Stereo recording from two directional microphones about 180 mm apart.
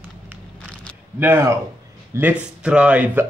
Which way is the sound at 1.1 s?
10° right (ahead or behind).